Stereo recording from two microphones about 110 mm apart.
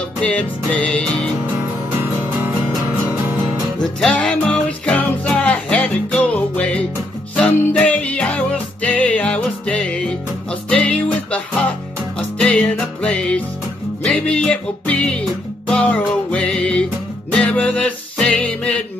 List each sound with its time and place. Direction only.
0.2 s music: 10° left (ahead or behind)
1.9 s music: 20° right (ahead or behind)
4.0 s music: 5° left (ahead or behind)